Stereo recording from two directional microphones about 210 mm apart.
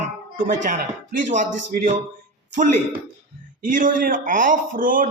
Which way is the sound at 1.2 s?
35° right (ahead or behind).